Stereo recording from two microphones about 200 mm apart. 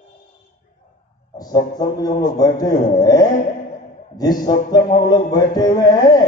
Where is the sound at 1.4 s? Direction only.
20° left (ahead or behind).